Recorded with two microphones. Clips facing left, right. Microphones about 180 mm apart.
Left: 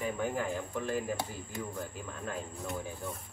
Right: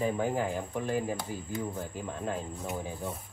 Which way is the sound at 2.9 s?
20° right (ahead or behind).